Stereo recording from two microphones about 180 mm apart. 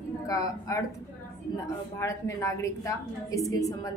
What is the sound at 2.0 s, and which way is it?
A woman's voice, 15° left (ahead or behind).